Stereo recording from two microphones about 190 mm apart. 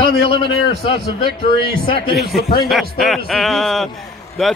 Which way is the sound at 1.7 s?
25° left (ahead or behind).